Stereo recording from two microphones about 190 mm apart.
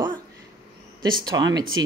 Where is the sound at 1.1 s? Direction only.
20° right (ahead or behind).